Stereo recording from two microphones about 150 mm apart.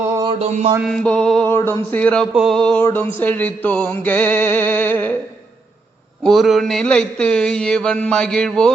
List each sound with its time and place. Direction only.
0.3 s a sound: 45° right (ahead or behind)
0.8 s music: 5° left (ahead or behind)
1.5 s music: 15° left (ahead or behind)
2.3 s mantra: centre (ahead or behind)
2.8 s music: 10° left (ahead or behind)
6.2 s mantra: centre (ahead or behind)